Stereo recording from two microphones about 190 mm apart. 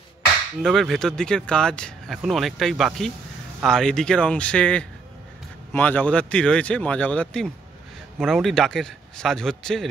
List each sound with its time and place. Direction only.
0.6 s speech: centre (ahead or behind)